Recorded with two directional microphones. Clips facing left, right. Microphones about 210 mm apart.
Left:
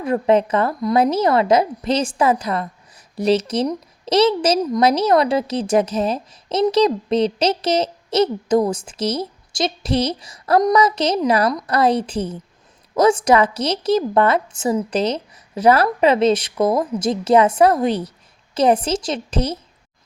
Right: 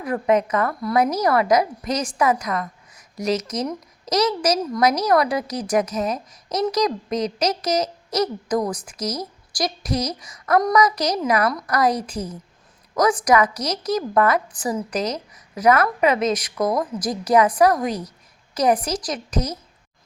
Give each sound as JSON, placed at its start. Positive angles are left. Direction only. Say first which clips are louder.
{"t": 0.0, "sound": "a woman's voice", "louder": "left 3 dB", "side_deg": 25}